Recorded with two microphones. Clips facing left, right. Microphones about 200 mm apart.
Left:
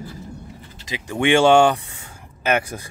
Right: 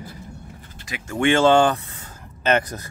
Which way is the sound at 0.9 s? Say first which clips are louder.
Left 1 dB; 15° left (ahead or behind).